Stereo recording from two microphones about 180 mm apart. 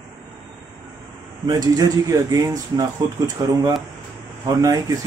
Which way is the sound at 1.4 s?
20° right (ahead or behind).